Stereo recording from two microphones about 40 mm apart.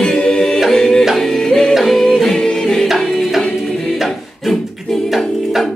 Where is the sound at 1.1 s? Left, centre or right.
Centre.